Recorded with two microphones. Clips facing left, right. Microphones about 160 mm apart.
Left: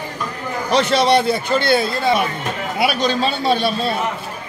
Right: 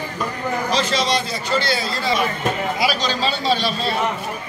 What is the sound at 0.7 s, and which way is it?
A man's voice, 65° left (ahead or behind).